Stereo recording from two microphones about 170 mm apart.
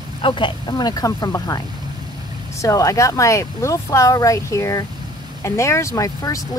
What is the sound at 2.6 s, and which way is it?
Speech, 20° left (ahead or behind).